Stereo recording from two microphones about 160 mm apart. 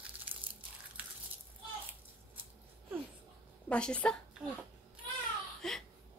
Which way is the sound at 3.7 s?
5° left (ahead or behind).